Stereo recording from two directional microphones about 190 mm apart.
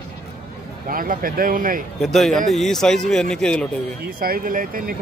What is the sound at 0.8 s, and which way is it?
Speech, 45° right (ahead or behind).